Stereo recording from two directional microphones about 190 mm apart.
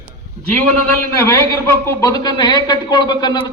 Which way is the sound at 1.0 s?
15° left (ahead or behind).